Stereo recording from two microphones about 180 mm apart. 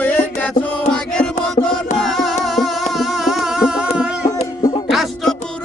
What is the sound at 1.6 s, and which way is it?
Music, 30° left (ahead or behind).